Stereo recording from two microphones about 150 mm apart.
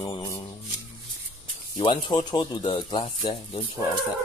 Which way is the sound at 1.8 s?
30° left (ahead or behind).